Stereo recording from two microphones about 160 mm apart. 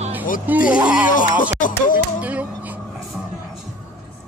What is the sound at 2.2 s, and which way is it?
Speech, 10° right (ahead or behind).